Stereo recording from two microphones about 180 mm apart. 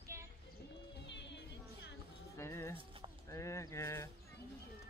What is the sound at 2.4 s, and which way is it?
Music, 15° left (ahead or behind).